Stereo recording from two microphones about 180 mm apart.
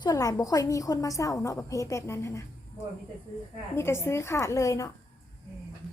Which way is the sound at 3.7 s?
15° left (ahead or behind).